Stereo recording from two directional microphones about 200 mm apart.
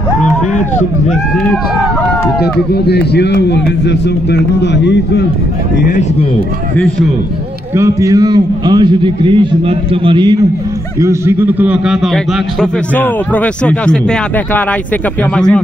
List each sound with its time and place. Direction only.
2.7 s a man's voice: 55° left (ahead or behind)
7.7 s a man's voice: 15° right (ahead or behind); by 15.6 s 5° left (ahead or behind)